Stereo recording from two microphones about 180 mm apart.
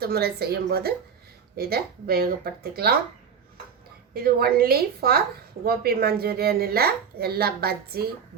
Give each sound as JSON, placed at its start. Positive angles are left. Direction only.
{"t": 0.0, "sound": "a woman's voice", "side_deg": -60}
{"t": 4.1, "sound": "a woman's voice", "side_deg": -60}